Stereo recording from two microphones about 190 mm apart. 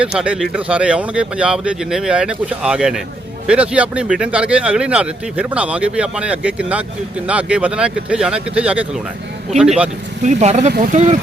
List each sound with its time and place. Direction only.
0.0 s speech: 5° right (ahead or behind)
10.2 s speech: 35° right (ahead or behind)